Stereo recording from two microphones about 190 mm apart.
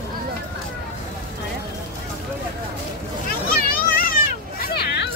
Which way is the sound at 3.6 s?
50° left (ahead or behind).